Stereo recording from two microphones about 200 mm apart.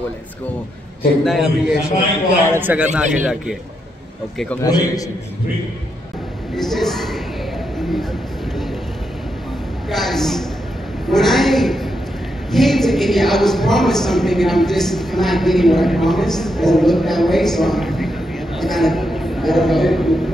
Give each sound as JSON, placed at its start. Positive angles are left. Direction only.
{"t": 1.2, "sound": "a woman's voice", "side_deg": 0}
{"t": 4.6, "sound": "a man's voice", "side_deg": 20}
{"t": 6.5, "sound": "a woman's voice", "side_deg": 0}
{"t": 9.8, "sound": "a woman's voice", "side_deg": 0}